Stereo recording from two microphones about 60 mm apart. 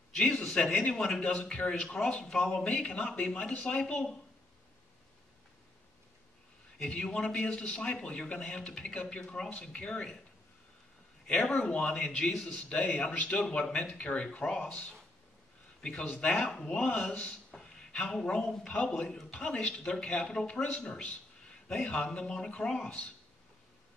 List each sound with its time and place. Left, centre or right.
0.1 s a man's voice: centre
6.8 s a man's voice: centre
11.7 s a man's voice: centre
15.8 s a man's voice: centre